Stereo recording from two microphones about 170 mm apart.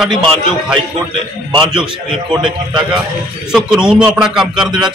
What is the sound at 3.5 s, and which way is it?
Speech, 5° right (ahead or behind).